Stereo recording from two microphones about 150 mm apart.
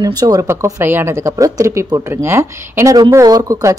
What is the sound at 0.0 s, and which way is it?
Speech, 25° right (ahead or behind).